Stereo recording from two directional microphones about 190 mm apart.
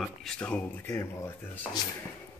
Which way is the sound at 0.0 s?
Centre (ahead or behind).